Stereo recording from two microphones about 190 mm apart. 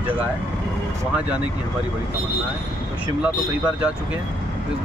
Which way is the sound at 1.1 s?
5° right (ahead or behind).